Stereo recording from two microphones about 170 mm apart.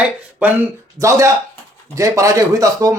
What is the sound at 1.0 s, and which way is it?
Speech, 20° right (ahead or behind).